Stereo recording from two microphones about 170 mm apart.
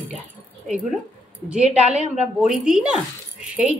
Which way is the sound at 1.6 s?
40° right (ahead or behind).